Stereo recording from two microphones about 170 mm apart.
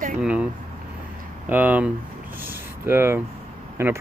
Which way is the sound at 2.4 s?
15° right (ahead or behind).